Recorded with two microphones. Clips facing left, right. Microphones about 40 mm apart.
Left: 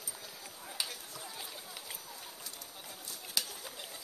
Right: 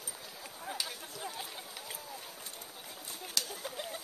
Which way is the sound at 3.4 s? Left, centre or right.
Centre.